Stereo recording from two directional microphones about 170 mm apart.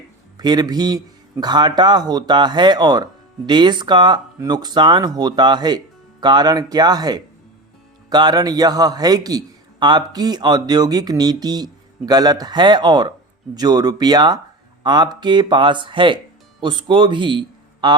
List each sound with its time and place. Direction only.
0.3 s a man's voice: 25° right (ahead or behind)